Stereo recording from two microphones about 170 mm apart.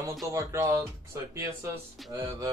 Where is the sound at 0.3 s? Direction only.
15° right (ahead or behind).